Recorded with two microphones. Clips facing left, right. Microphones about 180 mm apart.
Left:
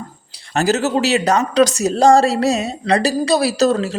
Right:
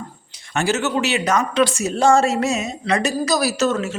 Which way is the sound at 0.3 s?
35° left (ahead or behind).